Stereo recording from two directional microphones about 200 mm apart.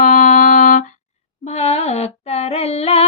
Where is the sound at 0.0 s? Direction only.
40° left (ahead or behind).